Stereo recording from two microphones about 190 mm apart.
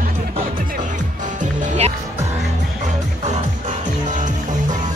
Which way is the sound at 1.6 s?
35° right (ahead or behind).